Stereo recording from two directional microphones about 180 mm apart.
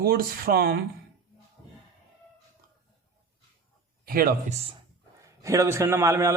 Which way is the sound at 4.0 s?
55° right (ahead or behind).